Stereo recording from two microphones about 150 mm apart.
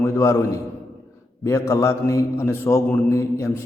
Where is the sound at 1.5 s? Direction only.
20° left (ahead or behind).